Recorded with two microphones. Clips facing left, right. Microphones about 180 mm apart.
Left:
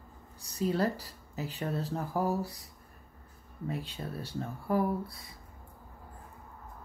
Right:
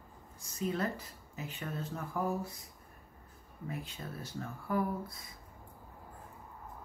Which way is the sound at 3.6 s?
30° left (ahead or behind).